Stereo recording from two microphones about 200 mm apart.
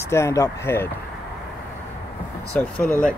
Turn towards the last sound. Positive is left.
turn(degrees=5)  # may be behind; listen again after turning